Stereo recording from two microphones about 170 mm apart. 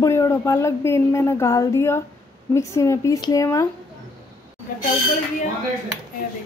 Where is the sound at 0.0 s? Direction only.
15° left (ahead or behind).